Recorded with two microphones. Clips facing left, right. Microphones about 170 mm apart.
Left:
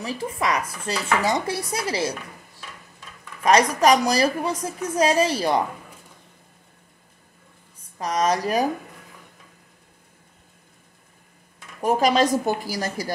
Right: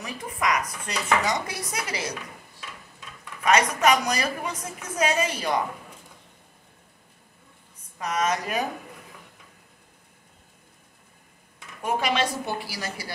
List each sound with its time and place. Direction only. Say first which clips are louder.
0.0 s speech: left 3 dB; 30° left (ahead or behind)
3.4 s speech: left 4 dB; 35° left (ahead or behind)
8.0 s speech: left 4 dB; 35° left (ahead or behind)
11.8 s a woman's voice: left 6 dB; 40° left (ahead or behind)